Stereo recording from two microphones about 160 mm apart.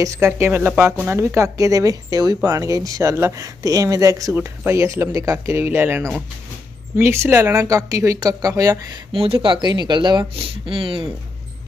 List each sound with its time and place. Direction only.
0.0 s a woman's voice: 20° right (ahead or behind)
9.2 s speech: 35° right (ahead or behind)